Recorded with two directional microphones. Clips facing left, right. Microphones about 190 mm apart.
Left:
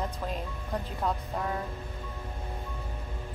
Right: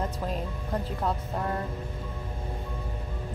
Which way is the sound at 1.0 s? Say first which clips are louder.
Even; centre (ahead or behind).